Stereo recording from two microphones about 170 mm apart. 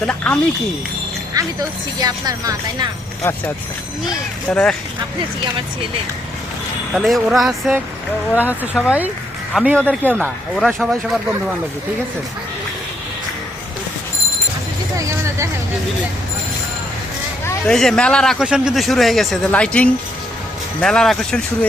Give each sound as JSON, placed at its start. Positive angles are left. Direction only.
{"t": 0.0, "sound": "a woman's voice", "side_deg": 10}
{"t": 1.4, "sound": "speech", "side_deg": -20}
{"t": 4.4, "sound": "a man's voice", "side_deg": 5}
{"t": 6.9, "sound": "a man's voice", "side_deg": 0}
{"t": 17.7, "sound": "a man's voice", "side_deg": 5}